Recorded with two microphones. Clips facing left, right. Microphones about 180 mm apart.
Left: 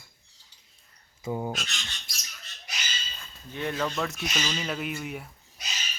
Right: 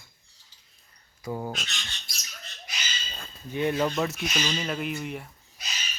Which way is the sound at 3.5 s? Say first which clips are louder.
Right 5 dB; 15° right (ahead or behind).